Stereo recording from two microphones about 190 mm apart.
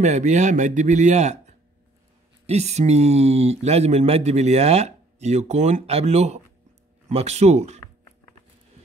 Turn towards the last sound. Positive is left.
turn(degrees=-35)  # may be behind; listen again after turning